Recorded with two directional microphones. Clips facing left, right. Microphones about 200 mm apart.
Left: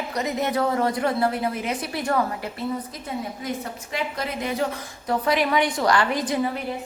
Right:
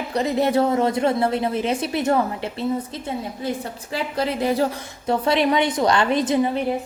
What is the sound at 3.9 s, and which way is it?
A woman's voice, 30° right (ahead or behind).